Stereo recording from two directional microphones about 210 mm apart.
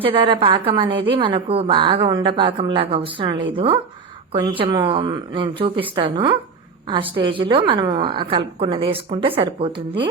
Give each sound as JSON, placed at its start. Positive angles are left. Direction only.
{"t": 0.0, "sound": "a woman's voice", "side_deg": -25}